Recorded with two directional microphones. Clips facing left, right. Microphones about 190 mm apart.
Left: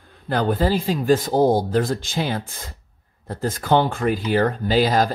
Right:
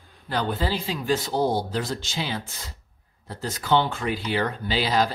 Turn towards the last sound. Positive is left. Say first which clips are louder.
# left 5 dB
turn(degrees=45)  # may be behind; listen again after turning